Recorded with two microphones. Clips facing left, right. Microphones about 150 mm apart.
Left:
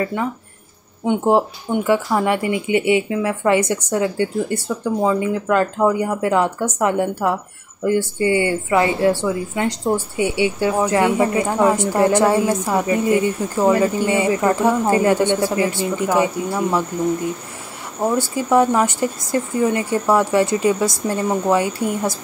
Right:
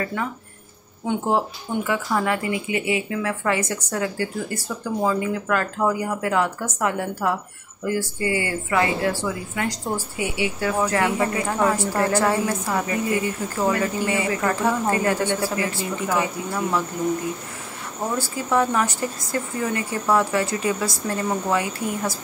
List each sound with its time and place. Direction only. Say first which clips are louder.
0.0 s a woman's voice: left 5 dB; 25° left (ahead or behind)
18.1 s a woman's voice: left 5 dB; 25° left (ahead or behind)